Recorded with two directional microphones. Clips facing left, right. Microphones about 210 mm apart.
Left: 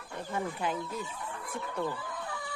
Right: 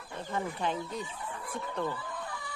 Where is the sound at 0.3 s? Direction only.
10° left (ahead or behind).